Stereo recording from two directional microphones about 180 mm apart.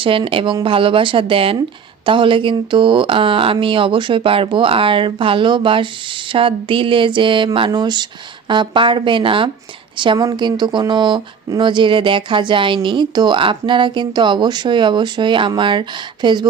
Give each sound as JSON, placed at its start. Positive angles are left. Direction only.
{"t": 0.0, "sound": "speech", "side_deg": -30}